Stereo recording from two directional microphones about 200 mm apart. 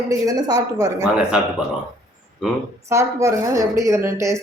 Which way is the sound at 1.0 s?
5° right (ahead or behind).